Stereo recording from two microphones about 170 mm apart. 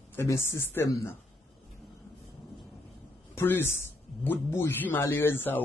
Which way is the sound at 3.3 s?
15° left (ahead or behind).